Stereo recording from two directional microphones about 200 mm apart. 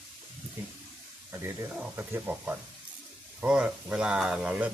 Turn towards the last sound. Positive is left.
turn(degrees=-5)  # may be behind; listen again after turning